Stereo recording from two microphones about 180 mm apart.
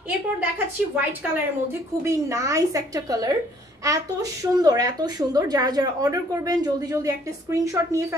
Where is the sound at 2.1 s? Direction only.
15° right (ahead or behind).